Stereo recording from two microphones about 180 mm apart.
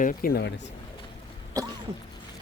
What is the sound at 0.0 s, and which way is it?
Speech, 50° left (ahead or behind).